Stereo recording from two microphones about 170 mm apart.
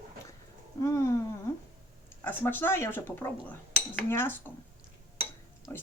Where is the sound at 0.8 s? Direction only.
15° left (ahead or behind).